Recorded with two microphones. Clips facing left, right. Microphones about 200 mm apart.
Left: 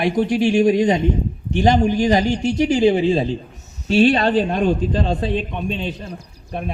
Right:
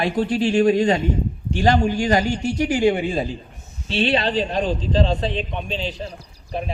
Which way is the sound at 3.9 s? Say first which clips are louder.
Left 6 dB; 45° left (ahead or behind).